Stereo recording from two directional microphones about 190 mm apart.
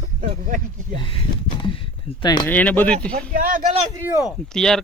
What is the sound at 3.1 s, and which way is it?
Speech, 45° right (ahead or behind).